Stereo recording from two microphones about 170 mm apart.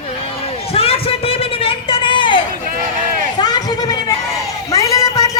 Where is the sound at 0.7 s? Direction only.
35° left (ahead or behind).